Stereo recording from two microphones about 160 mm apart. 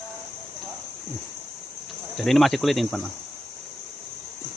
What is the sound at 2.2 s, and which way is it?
Speech, centre (ahead or behind).